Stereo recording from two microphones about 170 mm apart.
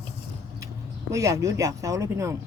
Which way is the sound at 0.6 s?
15° right (ahead or behind).